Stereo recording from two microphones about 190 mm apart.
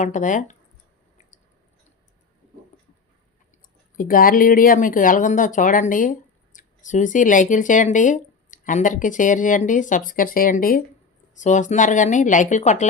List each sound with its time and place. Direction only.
0.0 s speech: 40° left (ahead or behind)
3.9 s speech: 45° left (ahead or behind)